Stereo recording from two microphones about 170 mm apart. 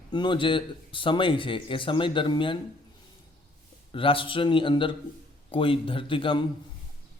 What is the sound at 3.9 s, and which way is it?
A man's voice, 30° left (ahead or behind).